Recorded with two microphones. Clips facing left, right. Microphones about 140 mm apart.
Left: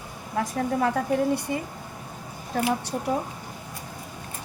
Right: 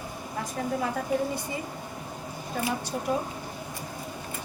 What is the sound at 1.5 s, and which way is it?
Speech, 55° left (ahead or behind).